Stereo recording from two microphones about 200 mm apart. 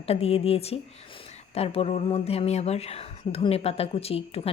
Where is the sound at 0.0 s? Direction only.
30° left (ahead or behind).